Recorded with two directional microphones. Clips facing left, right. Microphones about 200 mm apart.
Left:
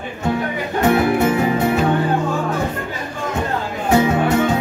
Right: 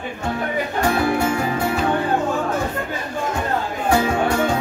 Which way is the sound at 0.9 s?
20° left (ahead or behind).